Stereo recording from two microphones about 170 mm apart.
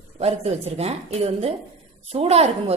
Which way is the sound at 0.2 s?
40° right (ahead or behind).